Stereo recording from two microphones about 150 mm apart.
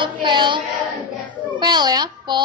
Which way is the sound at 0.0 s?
30° right (ahead or behind).